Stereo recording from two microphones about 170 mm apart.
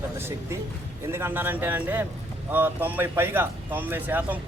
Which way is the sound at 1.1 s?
15° right (ahead or behind).